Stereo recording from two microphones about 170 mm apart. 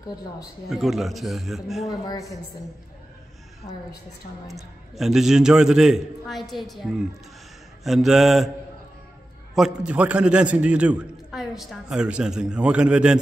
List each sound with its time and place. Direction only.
0.7 s a man's voice: centre (ahead or behind)
1.9 s a woman's voice: 20° left (ahead or behind)
3.6 s a woman's voice: 25° left (ahead or behind)
4.9 s a man's voice: centre (ahead or behind)
9.6 s a man's voice: 5° right (ahead or behind)